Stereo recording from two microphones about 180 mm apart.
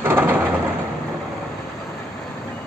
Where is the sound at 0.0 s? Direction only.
10° right (ahead or behind).